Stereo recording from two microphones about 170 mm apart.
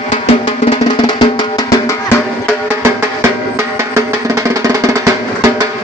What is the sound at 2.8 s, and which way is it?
Music, 15° right (ahead or behind).